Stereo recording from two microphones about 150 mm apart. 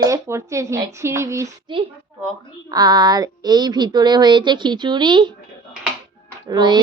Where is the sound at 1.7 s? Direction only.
30° right (ahead or behind).